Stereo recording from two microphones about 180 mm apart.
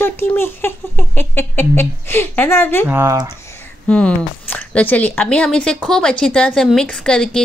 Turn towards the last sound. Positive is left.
turn(degrees=5)  # may be behind; listen again after turning